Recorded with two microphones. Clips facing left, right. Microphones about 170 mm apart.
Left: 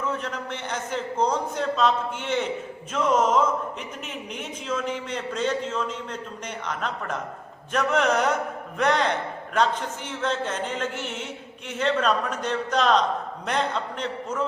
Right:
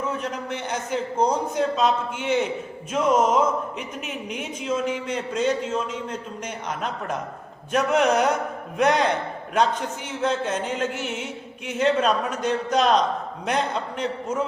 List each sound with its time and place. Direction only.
0.2 s a man's voice: 15° right (ahead or behind)